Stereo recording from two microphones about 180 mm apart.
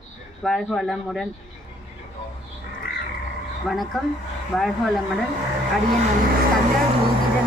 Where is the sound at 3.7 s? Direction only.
Centre (ahead or behind).